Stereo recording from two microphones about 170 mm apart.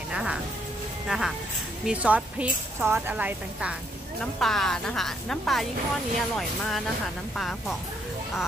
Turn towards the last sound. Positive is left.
turn(degrees=0)  # may be behind; listen again after turning